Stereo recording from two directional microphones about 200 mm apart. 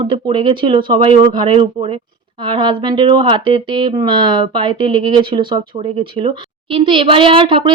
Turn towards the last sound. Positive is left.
turn(degrees=-25)  # may be behind; listen again after turning